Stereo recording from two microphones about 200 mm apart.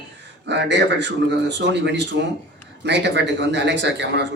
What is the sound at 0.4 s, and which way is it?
A man's voice, 60° right (ahead or behind).